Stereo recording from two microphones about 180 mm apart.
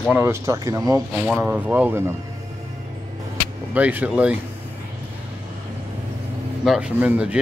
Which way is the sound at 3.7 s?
10° right (ahead or behind).